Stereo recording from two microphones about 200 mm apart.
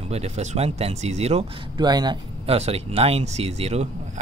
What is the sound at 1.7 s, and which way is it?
Speech, 20° right (ahead or behind).